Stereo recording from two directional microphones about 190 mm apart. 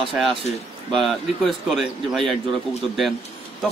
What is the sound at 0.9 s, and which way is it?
A man's voice, centre (ahead or behind).